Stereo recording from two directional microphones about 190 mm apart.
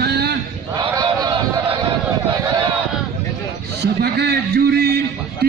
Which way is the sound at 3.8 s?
60° right (ahead or behind).